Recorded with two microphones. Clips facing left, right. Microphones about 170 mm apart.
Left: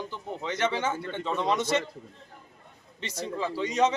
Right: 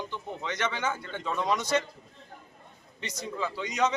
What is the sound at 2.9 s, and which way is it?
Speech, 30° left (ahead or behind).